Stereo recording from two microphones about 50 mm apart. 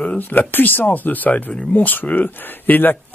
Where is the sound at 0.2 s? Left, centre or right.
Left.